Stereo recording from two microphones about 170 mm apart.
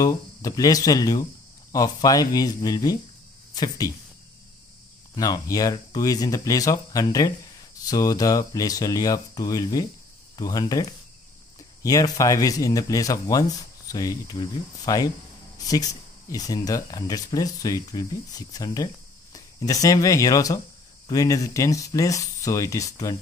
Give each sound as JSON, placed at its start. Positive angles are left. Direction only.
{"t": 0.0, "sound": "speech", "side_deg": 20}
{"t": 5.1, "sound": "speech", "side_deg": 20}